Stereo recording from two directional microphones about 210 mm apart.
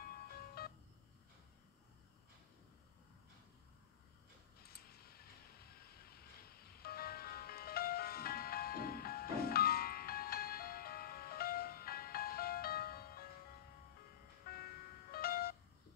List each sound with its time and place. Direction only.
0.0 s music: 45° left (ahead or behind)
4.6 s a sound: 45° left (ahead or behind)
14.4 s music: 45° left (ahead or behind)